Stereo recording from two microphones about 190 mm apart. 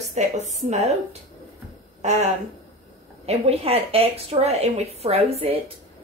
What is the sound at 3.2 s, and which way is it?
A woman's voice, 30° right (ahead or behind).